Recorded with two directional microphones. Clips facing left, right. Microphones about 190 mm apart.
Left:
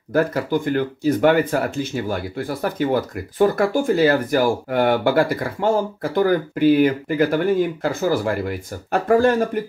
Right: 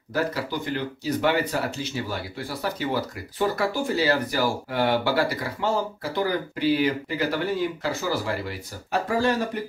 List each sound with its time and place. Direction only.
0.1 s speech: 50° left (ahead or behind)